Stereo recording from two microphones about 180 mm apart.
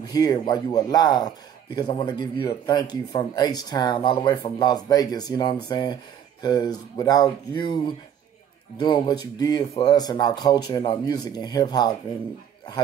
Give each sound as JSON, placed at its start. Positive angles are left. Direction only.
{"t": 0.1, "sound": "speech", "side_deg": 20}